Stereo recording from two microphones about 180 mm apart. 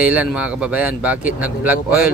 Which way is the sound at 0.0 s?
5° right (ahead or behind).